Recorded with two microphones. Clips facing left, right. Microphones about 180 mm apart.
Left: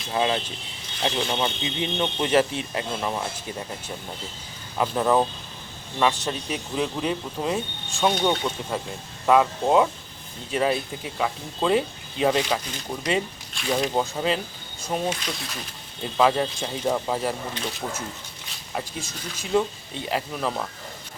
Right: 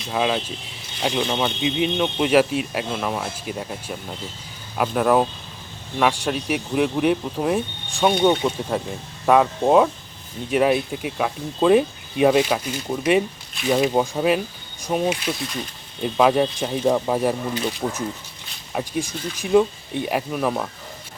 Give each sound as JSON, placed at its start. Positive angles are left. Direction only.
{"t": 0.2, "sound": "speech", "side_deg": -15}